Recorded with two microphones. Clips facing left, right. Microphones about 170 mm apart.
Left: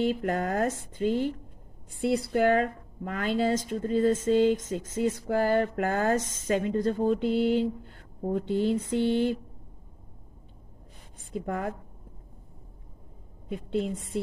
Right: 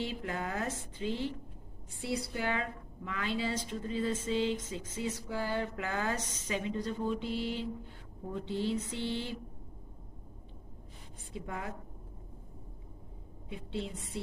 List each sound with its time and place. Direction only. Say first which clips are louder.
0.0 s a woman's voice: left 10 dB; 50° left (ahead or behind)
11.3 s a woman's voice: left 9 dB; 50° left (ahead or behind)
13.5 s a woman's voice: left 9 dB; 50° left (ahead or behind)